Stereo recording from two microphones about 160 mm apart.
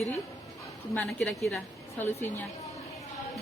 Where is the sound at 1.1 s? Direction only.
Centre (ahead or behind).